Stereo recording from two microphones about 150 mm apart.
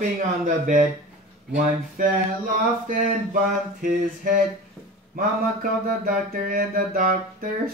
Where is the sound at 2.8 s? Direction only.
60° right (ahead or behind).